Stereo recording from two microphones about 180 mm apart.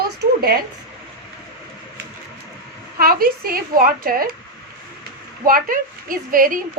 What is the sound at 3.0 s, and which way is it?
A woman's voice, 55° right (ahead or behind).